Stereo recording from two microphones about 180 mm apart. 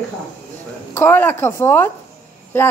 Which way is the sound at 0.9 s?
15° left (ahead or behind).